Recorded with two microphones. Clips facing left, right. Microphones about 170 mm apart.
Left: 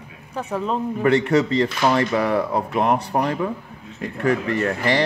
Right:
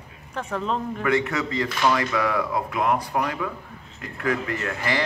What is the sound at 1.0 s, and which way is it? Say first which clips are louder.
Speech: left 8 dB; 30° left (ahead or behind).